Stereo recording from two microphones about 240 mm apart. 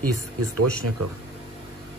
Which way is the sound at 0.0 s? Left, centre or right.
Right.